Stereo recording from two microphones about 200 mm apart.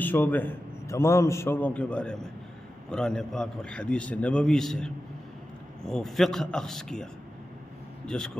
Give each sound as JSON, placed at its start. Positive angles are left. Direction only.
{"t": 0.0, "sound": "a man's voice", "side_deg": 10}
{"t": 8.1, "sound": "a man's voice", "side_deg": 5}